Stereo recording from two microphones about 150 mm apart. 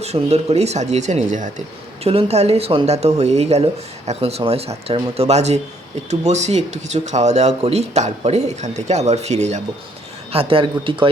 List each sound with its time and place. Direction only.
0.0 s speech: 45° right (ahead or behind)
2.0 s speech: 45° right (ahead or behind)
10.3 s speech: 35° right (ahead or behind)